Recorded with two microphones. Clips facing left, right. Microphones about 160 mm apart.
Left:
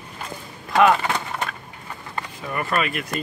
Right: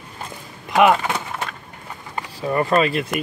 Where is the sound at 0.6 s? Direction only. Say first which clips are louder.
Right 2 dB; 20° right (ahead or behind).